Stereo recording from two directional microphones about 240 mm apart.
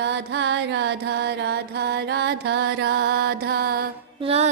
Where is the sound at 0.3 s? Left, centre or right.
Right.